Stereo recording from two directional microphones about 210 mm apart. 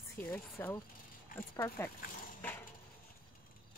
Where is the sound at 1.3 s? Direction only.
40° left (ahead or behind).